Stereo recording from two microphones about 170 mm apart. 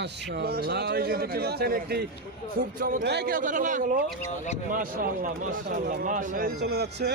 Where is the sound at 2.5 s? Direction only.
55° right (ahead or behind); by 7.1 s 75° right (ahead or behind).